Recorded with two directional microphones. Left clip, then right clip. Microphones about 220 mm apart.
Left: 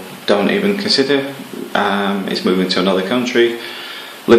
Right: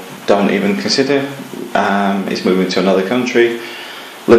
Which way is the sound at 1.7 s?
10° left (ahead or behind).